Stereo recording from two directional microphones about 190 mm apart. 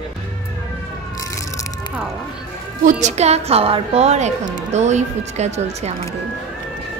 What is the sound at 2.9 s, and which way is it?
A woman's voice, 40° right (ahead or behind).